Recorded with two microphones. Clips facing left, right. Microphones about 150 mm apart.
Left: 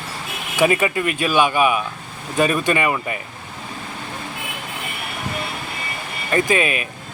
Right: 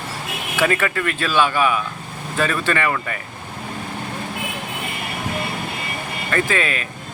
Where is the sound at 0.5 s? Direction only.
15° left (ahead or behind).